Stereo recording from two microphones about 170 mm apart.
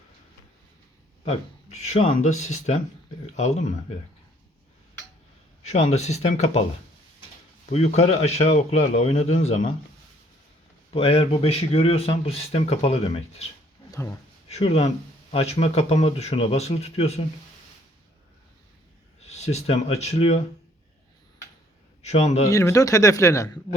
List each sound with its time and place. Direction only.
1.9 s speech: 45° left (ahead or behind)
5.6 s speech: 40° left (ahead or behind)
7.7 s speech: 40° left (ahead or behind)
10.9 s speech: 35° left (ahead or behind)
14.5 s speech: 35° left (ahead or behind)
19.3 s speech: 40° left (ahead or behind)
22.0 s speech: 40° left (ahead or behind)
22.4 s speech: 20° left (ahead or behind)